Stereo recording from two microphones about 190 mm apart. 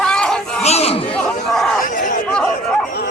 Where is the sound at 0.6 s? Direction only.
35° left (ahead or behind).